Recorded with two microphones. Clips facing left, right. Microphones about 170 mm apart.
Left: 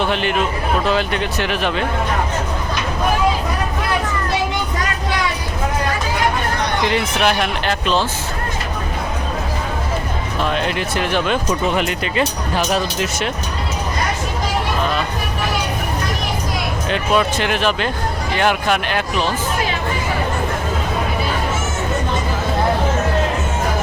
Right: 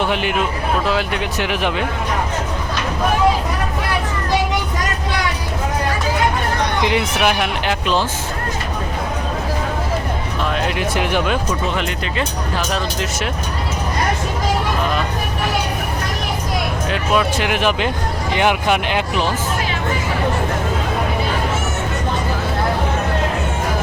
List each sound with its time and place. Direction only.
0.0 s speech: 10° right (ahead or behind)
6.8 s speech: 10° right (ahead or behind)
10.5 s speech: 5° right (ahead or behind)
10.9 s speech: 15° right (ahead or behind)
11.8 s speech: 10° left (ahead or behind)
16.9 s speech: 5° right (ahead or behind)